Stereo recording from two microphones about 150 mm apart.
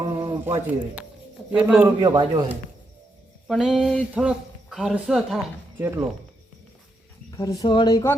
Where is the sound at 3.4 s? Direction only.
Centre (ahead or behind).